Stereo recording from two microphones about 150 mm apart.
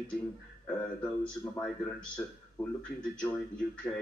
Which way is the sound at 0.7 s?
5° left (ahead or behind).